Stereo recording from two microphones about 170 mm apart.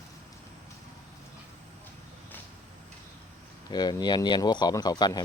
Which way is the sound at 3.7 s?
25° left (ahead or behind).